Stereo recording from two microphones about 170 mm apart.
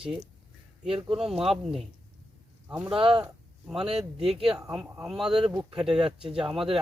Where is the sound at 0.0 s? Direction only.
5° right (ahead or behind).